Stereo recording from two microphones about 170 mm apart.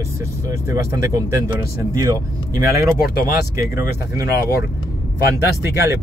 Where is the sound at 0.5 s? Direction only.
15° right (ahead or behind).